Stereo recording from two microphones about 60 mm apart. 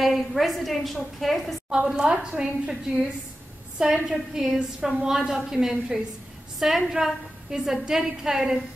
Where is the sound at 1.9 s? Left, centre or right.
Centre.